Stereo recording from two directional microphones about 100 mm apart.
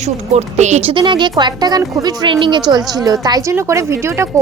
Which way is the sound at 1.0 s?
50° right (ahead or behind).